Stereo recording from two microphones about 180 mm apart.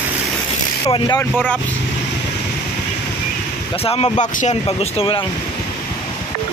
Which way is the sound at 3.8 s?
35° left (ahead or behind).